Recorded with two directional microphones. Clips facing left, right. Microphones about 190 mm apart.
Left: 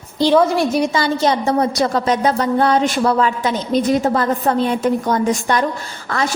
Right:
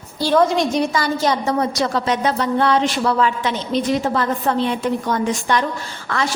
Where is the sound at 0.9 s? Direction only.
25° left (ahead or behind).